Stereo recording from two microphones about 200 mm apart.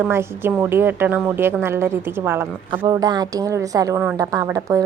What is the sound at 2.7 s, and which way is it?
A woman's voice, 20° right (ahead or behind).